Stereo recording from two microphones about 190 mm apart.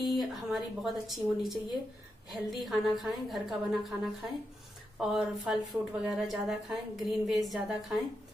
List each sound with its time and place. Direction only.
0.0 s speech: centre (ahead or behind)